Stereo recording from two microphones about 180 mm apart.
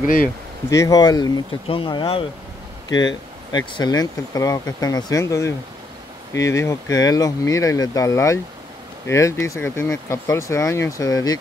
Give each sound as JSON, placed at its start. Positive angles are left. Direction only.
{"t": 0.7, "sound": "speech", "side_deg": 15}